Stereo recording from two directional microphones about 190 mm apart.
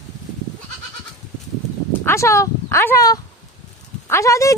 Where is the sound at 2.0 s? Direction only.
15° left (ahead or behind).